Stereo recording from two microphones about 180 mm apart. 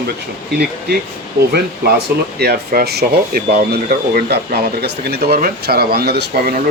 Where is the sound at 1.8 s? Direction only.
65° right (ahead or behind).